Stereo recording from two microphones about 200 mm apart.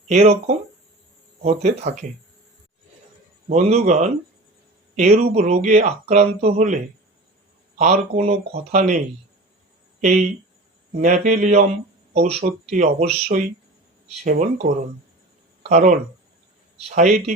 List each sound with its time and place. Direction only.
0.1 s speech: 35° right (ahead or behind)
3.5 s speech: 35° right (ahead or behind)
7.8 s speech: 35° right (ahead or behind)
10.9 s speech: 35° right (ahead or behind)
15.7 s speech: 35° right (ahead or behind)